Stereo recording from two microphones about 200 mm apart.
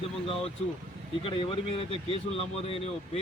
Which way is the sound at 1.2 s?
25° left (ahead or behind).